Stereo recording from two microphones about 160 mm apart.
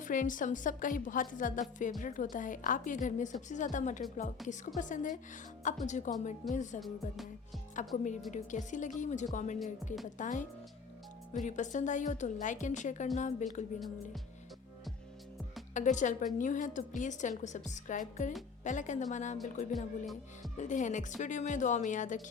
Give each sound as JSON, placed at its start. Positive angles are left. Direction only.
{"t": 0.0, "sound": "a woman's voice", "side_deg": 55}
{"t": 6.7, "sound": "music", "side_deg": 0}
{"t": 7.9, "sound": "a woman's voice", "side_deg": 55}
{"t": 13.7, "sound": "music", "side_deg": 0}
{"t": 15.7, "sound": "a woman's voice", "side_deg": 50}
{"t": 19.7, "sound": "music", "side_deg": 0}
{"t": 20.6, "sound": "a woman's voice", "side_deg": 50}